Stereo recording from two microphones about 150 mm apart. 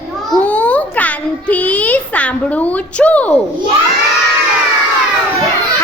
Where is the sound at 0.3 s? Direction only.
10° left (ahead or behind).